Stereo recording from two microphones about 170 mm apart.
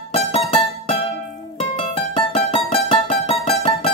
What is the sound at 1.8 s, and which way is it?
Music, 30° left (ahead or behind).